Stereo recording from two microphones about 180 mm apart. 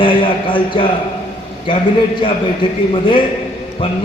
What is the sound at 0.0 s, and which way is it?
A man's voice, 30° left (ahead or behind).